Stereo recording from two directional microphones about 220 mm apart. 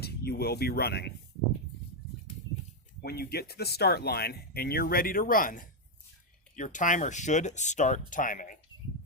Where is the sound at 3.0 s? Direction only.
45° left (ahead or behind).